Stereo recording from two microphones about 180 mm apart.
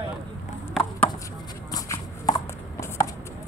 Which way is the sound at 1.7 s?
20° left (ahead or behind).